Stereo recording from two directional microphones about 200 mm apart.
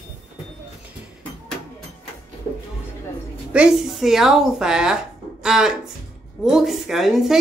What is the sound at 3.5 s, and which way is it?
A woman's voice, 5° right (ahead or behind).